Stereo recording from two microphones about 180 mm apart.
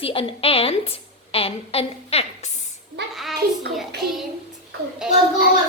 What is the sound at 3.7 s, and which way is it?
Child singing, centre (ahead or behind).